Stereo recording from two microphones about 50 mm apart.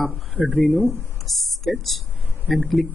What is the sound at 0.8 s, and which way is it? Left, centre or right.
Speech, right.